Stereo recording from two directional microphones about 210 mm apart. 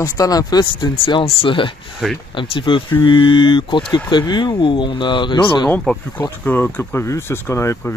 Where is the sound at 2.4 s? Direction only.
25° left (ahead or behind).